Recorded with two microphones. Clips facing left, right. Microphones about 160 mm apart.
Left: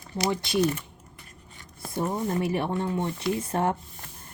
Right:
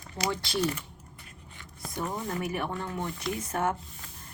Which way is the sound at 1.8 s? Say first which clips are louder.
Left 5 dB; 25° left (ahead or behind).